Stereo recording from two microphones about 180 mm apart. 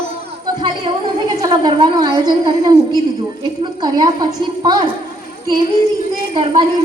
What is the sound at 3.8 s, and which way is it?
Speech, 25° right (ahead or behind).